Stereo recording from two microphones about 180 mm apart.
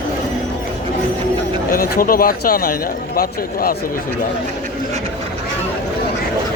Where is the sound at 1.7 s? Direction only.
55° left (ahead or behind).